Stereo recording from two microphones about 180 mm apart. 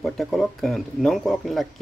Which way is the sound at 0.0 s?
Centre (ahead or behind).